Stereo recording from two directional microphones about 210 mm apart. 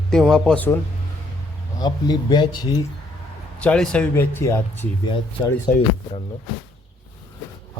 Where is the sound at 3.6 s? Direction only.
5° left (ahead or behind).